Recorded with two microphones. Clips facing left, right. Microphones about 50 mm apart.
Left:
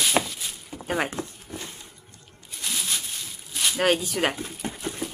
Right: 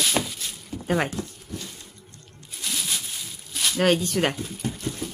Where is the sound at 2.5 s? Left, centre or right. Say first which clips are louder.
Even; centre.